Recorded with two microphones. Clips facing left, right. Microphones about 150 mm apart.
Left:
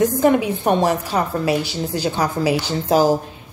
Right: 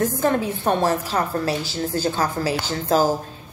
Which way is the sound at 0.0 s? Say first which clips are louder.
Left 5 dB; 15° left (ahead or behind).